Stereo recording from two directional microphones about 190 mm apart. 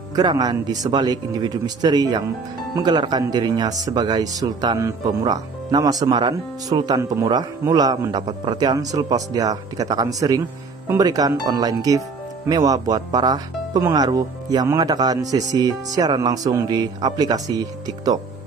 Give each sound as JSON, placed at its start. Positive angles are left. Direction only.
{"t": 0.1, "sound": "speech", "side_deg": -20}